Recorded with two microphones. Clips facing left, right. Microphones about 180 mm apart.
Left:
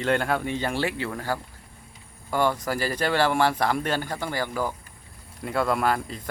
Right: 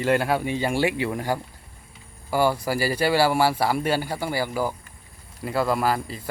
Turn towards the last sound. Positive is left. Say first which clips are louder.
# right 1 dB
turn(degrees=-5)  # may be behind; listen again after turning